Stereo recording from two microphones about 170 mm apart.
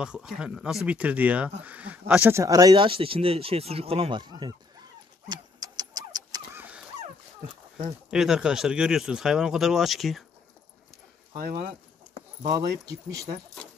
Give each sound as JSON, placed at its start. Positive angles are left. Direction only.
{"t": 0.0, "sound": "speech", "side_deg": -5}
{"t": 5.3, "sound": "vehicle", "side_deg": -25}
{"t": 8.1, "sound": "speech", "side_deg": -5}
{"t": 11.3, "sound": "speech", "side_deg": -60}
{"t": 12.4, "sound": "speech", "side_deg": -20}